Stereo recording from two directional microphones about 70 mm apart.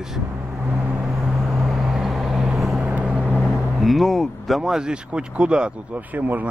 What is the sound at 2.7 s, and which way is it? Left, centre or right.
Vehicle, centre.